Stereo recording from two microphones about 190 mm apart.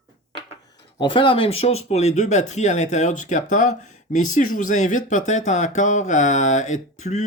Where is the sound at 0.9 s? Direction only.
25° left (ahead or behind).